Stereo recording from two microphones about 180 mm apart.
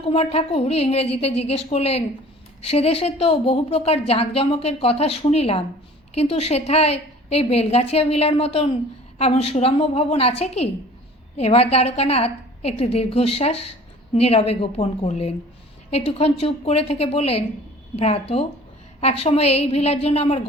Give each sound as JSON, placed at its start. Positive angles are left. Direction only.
{"t": 0.0, "sound": "a woman's voice", "side_deg": 35}